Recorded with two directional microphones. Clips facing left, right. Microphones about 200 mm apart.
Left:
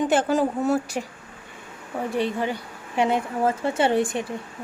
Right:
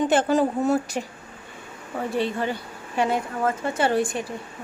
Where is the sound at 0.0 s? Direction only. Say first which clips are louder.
Right 1 dB; 10° left (ahead or behind).